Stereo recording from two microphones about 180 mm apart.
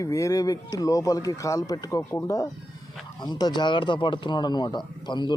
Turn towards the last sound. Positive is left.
turn(degrees=25)  # may be behind; listen again after turning